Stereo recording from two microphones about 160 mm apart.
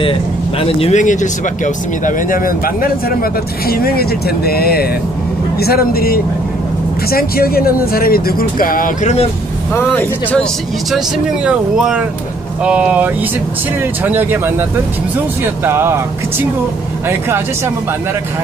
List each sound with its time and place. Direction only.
0.0 s speech: 35° left (ahead or behind)
1.0 s speech: 50° left (ahead or behind)
9.8 s speech: 15° left (ahead or behind)
11.4 s speech: 5° right (ahead or behind)